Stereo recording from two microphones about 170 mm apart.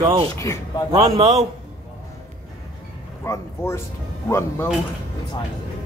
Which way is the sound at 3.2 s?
15° left (ahead or behind).